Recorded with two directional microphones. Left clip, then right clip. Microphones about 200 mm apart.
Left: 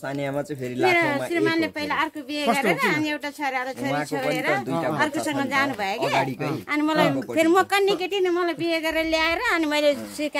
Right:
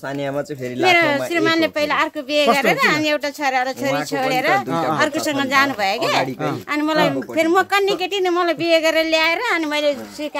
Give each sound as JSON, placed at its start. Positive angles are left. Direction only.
{"t": 0.8, "sound": "speech", "side_deg": -60}
{"t": 6.7, "sound": "speech", "side_deg": -20}
{"t": 7.3, "sound": "a woman's voice", "side_deg": 0}
{"t": 8.1, "sound": "speech", "side_deg": -50}
{"t": 9.2, "sound": "a woman's voice", "side_deg": -10}